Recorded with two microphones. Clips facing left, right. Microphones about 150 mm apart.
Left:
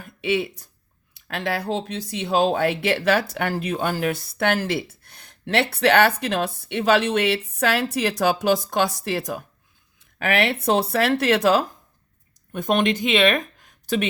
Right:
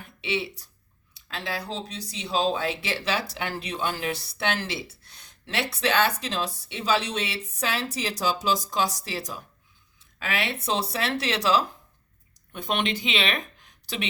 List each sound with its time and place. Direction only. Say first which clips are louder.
0.0 s speech: left 6 dB; 50° left (ahead or behind)